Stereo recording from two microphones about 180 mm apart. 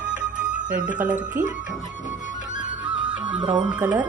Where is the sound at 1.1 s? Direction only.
45° right (ahead or behind).